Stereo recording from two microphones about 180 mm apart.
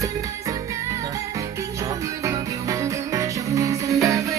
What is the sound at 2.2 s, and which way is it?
Music, 15° right (ahead or behind).